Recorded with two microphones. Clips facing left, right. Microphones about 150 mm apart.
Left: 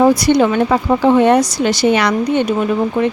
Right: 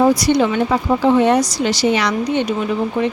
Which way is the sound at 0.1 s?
60° left (ahead or behind).